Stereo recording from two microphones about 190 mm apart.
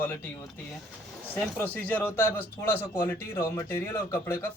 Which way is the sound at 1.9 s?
10° left (ahead or behind).